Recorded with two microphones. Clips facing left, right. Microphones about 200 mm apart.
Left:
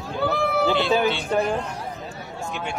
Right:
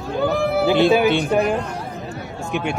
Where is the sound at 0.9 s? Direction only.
15° right (ahead or behind).